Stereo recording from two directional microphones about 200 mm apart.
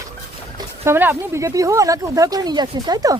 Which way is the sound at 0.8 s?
10° right (ahead or behind).